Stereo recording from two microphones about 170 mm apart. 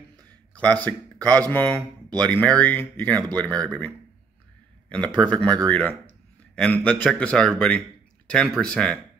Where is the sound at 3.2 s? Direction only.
25° right (ahead or behind).